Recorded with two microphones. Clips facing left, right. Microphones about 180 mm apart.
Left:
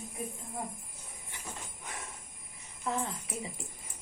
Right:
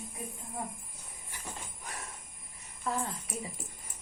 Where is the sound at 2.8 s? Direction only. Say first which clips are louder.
Even; 25° left (ahead or behind).